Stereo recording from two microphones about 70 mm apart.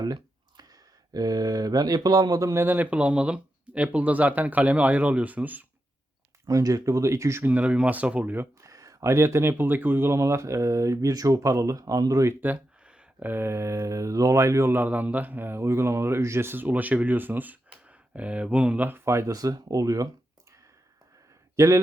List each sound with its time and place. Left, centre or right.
0.0 s a sound: right
1.1 s speech: right
2.6 s speech: right
6.4 s speech: right
7.4 s speech: centre
8.6 s speech: right
12.3 s speech: right
14.7 s speech: right
19.0 s speech: right
19.3 s speech: right
21.5 s speech: right